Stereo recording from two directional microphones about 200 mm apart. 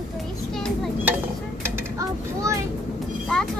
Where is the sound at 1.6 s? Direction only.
15° right (ahead or behind).